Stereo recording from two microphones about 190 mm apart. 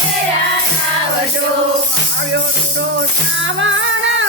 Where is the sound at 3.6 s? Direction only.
75° right (ahead or behind).